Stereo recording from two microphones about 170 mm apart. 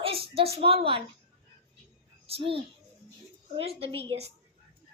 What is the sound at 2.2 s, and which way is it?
A woman's voice, 35° right (ahead or behind).